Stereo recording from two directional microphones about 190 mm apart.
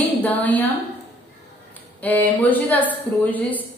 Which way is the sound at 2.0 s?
10° left (ahead or behind).